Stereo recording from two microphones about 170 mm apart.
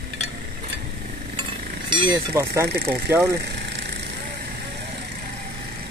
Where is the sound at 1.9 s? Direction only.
25° right (ahead or behind).